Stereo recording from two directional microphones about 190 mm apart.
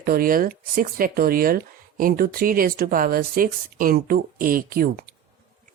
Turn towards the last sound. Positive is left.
turn(degrees=-50)  # may be behind; listen again after turning